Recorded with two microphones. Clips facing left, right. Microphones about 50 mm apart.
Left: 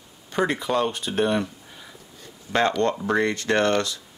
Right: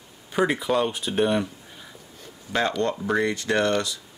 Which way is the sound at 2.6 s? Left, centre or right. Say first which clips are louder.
Left 3 dB; centre.